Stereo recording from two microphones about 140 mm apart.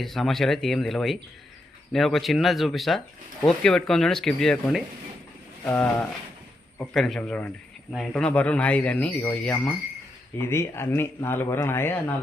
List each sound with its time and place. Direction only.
0.0 s speech: centre (ahead or behind)